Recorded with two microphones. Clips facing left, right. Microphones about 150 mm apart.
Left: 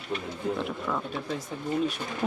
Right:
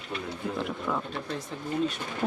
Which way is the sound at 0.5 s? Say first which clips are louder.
Right 1 dB; centre (ahead or behind).